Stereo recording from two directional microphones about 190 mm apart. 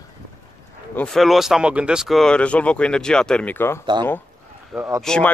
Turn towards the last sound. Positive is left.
turn(degrees=5)  # may be behind; listen again after turning